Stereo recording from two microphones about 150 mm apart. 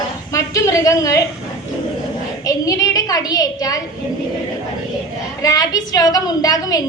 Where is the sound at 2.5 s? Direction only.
25° left (ahead or behind).